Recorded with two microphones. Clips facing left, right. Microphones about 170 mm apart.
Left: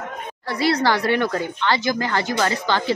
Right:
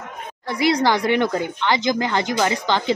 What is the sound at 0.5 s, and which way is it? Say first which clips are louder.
Speech: right 1 dB; 15° right (ahead or behind).